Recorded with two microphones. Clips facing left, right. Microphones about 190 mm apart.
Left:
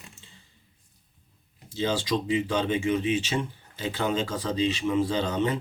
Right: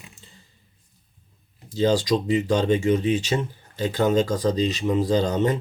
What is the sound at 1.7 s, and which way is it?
Speech, 40° right (ahead or behind).